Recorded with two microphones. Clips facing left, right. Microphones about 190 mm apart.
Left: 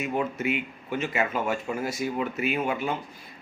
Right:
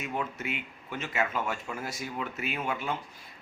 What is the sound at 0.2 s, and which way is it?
Speech, 10° left (ahead or behind).